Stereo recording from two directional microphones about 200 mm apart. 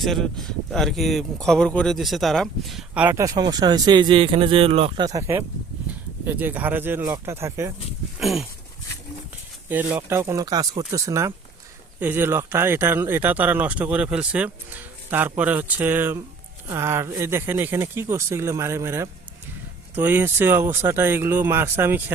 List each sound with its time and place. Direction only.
0.0 s speech: centre (ahead or behind); by 5.0 s 30° right (ahead or behind)
5.0 s speech: 15° right (ahead or behind)
8.2 s speech: centre (ahead or behind)
9.6 s speech: 10° right (ahead or behind)